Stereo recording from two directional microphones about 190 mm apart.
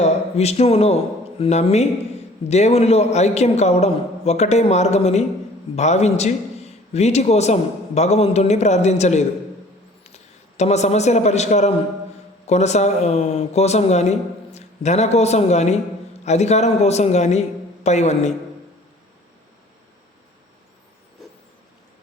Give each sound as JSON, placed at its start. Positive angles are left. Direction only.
{"t": 0.0, "sound": "a man's voice", "side_deg": 35}
{"t": 10.6, "sound": "a man's voice", "side_deg": 35}